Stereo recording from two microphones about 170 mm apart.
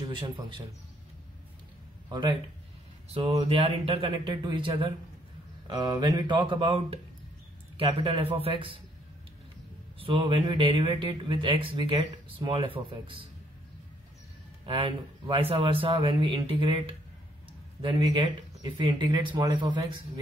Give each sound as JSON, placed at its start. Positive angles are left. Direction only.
{"t": 0.0, "sound": "speech", "side_deg": -30}
{"t": 2.0, "sound": "speech", "side_deg": -25}
{"t": 3.1, "sound": "speech", "side_deg": -35}
{"t": 9.9, "sound": "speech", "side_deg": -30}
{"t": 14.7, "sound": "speech", "side_deg": -30}